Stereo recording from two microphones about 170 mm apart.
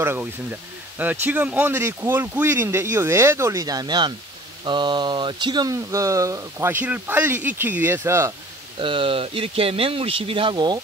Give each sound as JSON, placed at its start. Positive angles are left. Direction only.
{"t": 0.0, "sound": "speech", "side_deg": -15}
{"t": 8.7, "sound": "speech", "side_deg": -30}